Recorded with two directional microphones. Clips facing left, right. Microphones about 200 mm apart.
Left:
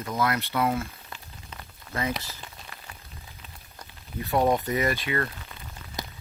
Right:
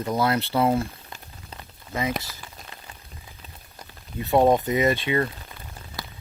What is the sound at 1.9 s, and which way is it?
Speech, 15° right (ahead or behind).